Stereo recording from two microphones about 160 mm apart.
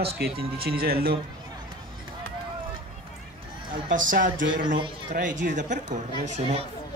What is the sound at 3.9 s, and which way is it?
Music, 55° right (ahead or behind).